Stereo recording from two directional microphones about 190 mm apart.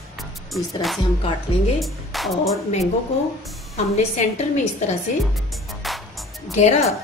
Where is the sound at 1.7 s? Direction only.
Centre (ahead or behind).